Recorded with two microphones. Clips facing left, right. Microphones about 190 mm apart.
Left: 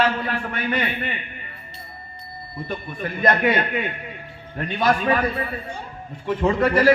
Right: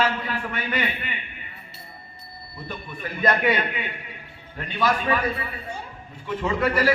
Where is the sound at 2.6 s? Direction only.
50° left (ahead or behind).